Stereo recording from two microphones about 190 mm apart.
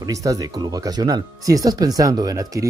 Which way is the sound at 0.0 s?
20° right (ahead or behind).